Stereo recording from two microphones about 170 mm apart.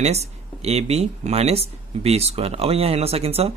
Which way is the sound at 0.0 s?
40° right (ahead or behind).